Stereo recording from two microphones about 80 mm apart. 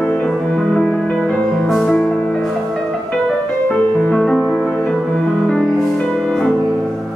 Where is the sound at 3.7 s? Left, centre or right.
Centre.